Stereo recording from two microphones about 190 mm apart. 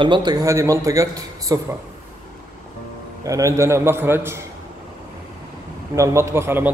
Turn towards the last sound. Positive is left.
turn(degrees=-10)  # may be behind; listen again after turning